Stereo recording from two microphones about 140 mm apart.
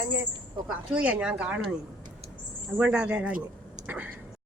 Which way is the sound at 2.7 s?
10° right (ahead or behind).